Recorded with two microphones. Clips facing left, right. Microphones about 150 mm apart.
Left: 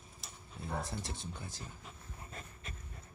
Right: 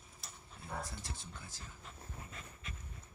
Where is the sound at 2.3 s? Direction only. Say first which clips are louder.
Left 2 dB; 40° left (ahead or behind).